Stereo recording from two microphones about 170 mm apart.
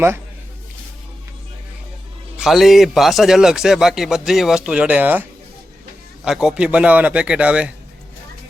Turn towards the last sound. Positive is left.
turn(degrees=-5)  # may be behind; listen again after turning